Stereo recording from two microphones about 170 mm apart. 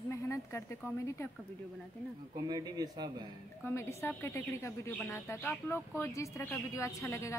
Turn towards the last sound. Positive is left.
turn(degrees=15)  # may be behind; listen again after turning